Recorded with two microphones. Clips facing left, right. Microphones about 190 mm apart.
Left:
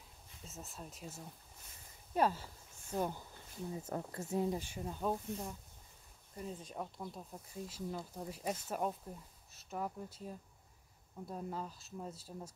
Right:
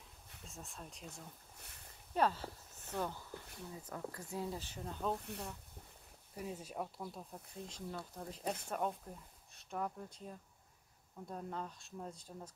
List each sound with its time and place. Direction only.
0.5 s speech: 5° left (ahead or behind)
3.7 s speech: 25° left (ahead or behind); by 5.2 s 10° left (ahead or behind)
5.2 s speech: 70° right (ahead or behind)
6.3 s speech: 10° right (ahead or behind); by 12.5 s 10° left (ahead or behind)